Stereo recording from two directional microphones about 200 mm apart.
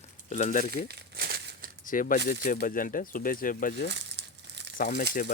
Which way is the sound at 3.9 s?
60° right (ahead or behind).